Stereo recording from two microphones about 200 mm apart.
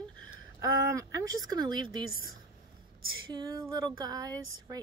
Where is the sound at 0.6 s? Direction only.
15° right (ahead or behind).